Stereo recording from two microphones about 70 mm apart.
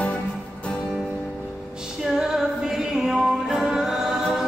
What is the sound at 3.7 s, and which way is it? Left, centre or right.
Choir, centre.